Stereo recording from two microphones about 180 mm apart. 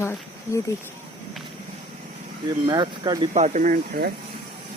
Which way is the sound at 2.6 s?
25° right (ahead or behind).